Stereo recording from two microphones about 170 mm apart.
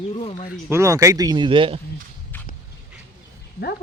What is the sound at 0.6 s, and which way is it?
Speech, 15° right (ahead or behind).